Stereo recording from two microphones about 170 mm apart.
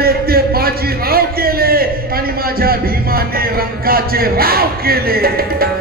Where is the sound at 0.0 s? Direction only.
60° right (ahead or behind).